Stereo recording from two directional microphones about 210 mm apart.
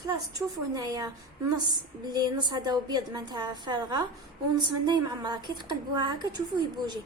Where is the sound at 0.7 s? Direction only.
15° right (ahead or behind).